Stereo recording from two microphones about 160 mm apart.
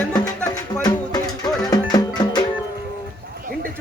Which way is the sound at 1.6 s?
25° left (ahead or behind).